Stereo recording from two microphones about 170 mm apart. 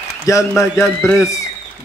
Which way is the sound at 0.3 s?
20° left (ahead or behind).